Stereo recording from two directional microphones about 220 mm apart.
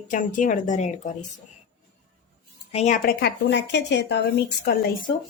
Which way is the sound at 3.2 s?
50° left (ahead or behind).